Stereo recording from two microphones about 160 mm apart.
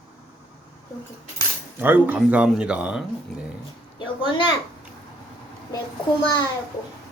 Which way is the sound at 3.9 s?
30° left (ahead or behind).